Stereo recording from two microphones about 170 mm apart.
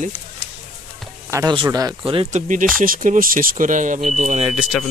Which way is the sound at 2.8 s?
50° right (ahead or behind).